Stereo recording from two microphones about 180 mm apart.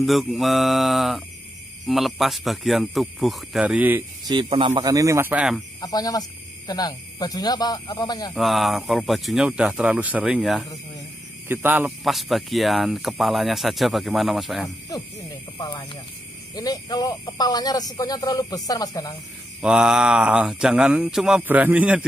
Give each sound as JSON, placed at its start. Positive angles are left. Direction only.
{"t": 0.0, "sound": "speech", "side_deg": 0}
{"t": 4.3, "sound": "speech", "side_deg": -30}
{"t": 4.8, "sound": "speech", "side_deg": -20}
{"t": 5.8, "sound": "speech", "side_deg": 20}
{"t": 8.4, "sound": "speech", "side_deg": 0}
{"t": 12.0, "sound": "speech", "side_deg": 0}
{"t": 15.5, "sound": "speech", "side_deg": 25}
{"t": 19.6, "sound": "speech", "side_deg": -5}